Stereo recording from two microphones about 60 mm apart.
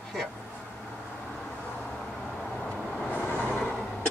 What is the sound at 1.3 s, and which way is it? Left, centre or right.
Vehicle, centre.